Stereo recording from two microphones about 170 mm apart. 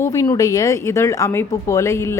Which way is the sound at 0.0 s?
15° left (ahead or behind).